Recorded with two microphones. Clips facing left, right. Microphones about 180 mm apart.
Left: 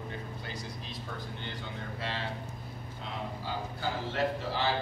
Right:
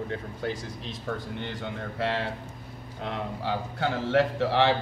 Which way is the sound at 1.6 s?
65° right (ahead or behind).